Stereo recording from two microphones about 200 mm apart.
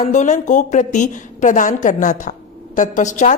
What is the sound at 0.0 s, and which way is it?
A woman's voice, 40° left (ahead or behind).